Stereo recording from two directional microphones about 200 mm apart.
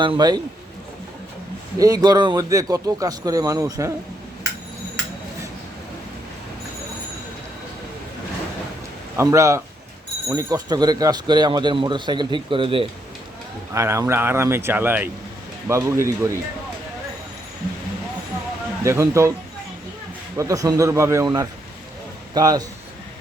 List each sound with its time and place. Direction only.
0.0 s speech: 20° right (ahead or behind)
1.8 s a man's voice: 20° right (ahead or behind)
9.1 s a man's voice: 15° right (ahead or behind)
13.7 s a man's voice: 15° right (ahead or behind)
18.8 s a man's voice: 15° right (ahead or behind)
20.3 s a man's voice: 15° right (ahead or behind)